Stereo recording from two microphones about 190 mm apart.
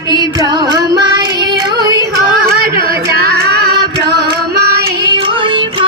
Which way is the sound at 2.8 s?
55° right (ahead or behind).